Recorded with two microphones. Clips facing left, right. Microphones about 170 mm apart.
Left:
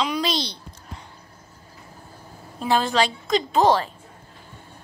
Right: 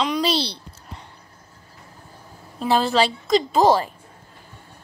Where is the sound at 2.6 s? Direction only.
5° right (ahead or behind).